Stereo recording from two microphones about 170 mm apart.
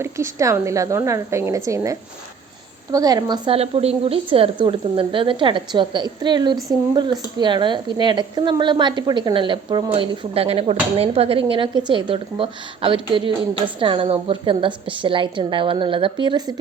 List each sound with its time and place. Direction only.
0.0 s a woman's voice: 15° right (ahead or behind)